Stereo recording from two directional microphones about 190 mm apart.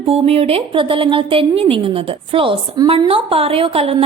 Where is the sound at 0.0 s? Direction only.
30° right (ahead or behind).